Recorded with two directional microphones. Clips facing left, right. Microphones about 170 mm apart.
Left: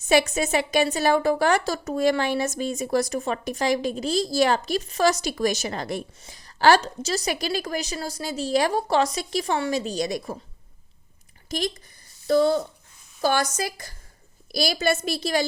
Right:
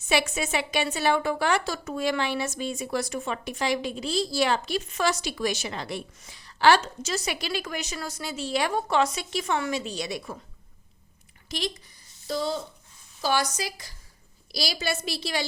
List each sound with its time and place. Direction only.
0.0 s a woman's voice: 40° left (ahead or behind)
11.4 s speech: 45° left (ahead or behind)
12.3 s a woman's voice: 55° left (ahead or behind)